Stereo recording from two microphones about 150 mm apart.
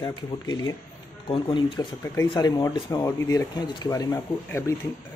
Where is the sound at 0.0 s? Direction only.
25° left (ahead or behind).